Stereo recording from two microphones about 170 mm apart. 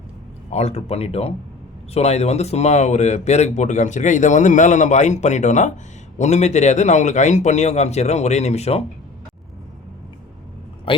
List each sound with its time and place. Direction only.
0.5 s a man's voice: 40° left (ahead or behind)
10.9 s speech: 30° left (ahead or behind)